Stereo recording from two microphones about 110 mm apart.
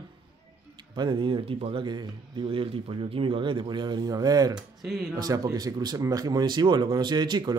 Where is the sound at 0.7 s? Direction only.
45° right (ahead or behind).